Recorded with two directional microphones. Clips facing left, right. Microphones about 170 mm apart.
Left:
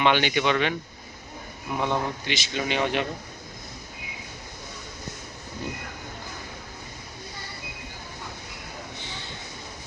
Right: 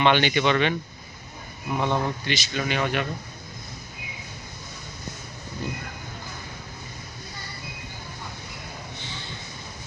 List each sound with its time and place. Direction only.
0.0 s speech: 10° left (ahead or behind)
1.7 s speech: 5° left (ahead or behind)
2.5 s speech: 20° left (ahead or behind)